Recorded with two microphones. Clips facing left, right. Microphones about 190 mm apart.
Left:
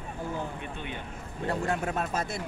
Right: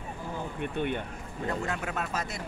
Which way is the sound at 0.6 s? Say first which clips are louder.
Right 7 dB; 55° right (ahead or behind).